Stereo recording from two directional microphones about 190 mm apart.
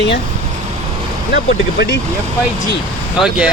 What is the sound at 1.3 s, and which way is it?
Speech, 60° left (ahead or behind).